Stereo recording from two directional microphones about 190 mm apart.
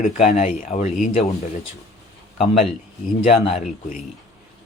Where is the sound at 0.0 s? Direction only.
35° left (ahead or behind).